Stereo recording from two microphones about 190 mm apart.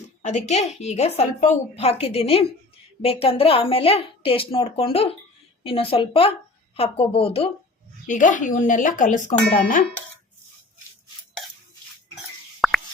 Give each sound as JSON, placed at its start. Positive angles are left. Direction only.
{"t": 0.2, "sound": "a woman's voice", "side_deg": 40}
{"t": 8.0, "sound": "a woman's voice", "side_deg": 40}
{"t": 12.6, "sound": "plop", "side_deg": 0}